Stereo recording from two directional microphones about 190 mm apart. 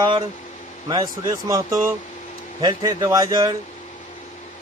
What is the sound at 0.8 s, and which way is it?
Speech, 25° right (ahead or behind).